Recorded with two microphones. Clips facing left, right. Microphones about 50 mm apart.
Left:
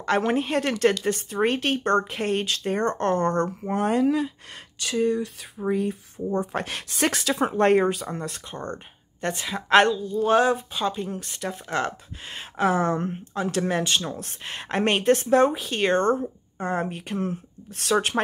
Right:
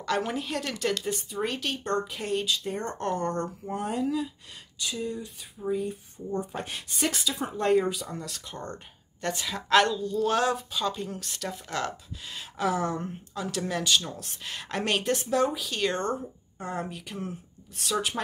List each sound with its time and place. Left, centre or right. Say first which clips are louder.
0.3 s speech: left 8 dB; left
9.9 s speech: left 5 dB; centre
11.5 s speech: left 6 dB; left